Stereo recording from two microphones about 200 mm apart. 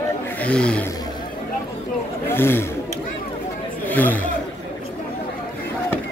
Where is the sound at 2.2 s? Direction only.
10° left (ahead or behind).